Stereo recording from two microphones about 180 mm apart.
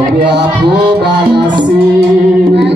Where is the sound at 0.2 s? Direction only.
70° right (ahead or behind).